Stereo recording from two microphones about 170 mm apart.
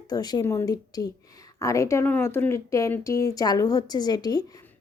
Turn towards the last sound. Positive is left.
turn(degrees=25)  # may be behind; listen again after turning